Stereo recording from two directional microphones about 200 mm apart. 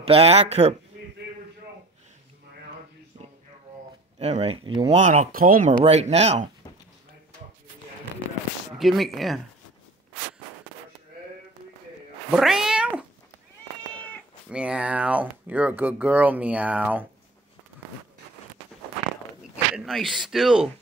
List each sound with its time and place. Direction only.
0.0 s speech: 30° right (ahead or behind)
3.1 s a sound: 30° right (ahead or behind)
4.2 s speech: 30° right (ahead or behind)
4.9 s speech: 40° right (ahead or behind)
5.7 s speech: 35° right (ahead or behind)
8.7 s speech: centre (ahead or behind)
12.3 s cat: centre (ahead or behind)
14.5 s speech: 5° right (ahead or behind)
19.5 s speech: 5° right (ahead or behind)